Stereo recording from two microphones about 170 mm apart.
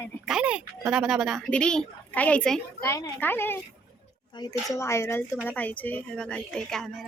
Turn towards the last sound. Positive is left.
turn(degrees=0)  # may be behind; listen again after turning